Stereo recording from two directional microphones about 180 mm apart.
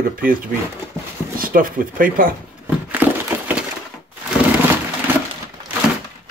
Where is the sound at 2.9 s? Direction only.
10° right (ahead or behind).